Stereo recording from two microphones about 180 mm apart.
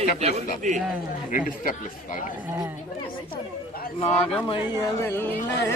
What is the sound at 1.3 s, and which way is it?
Speech, 45° left (ahead or behind).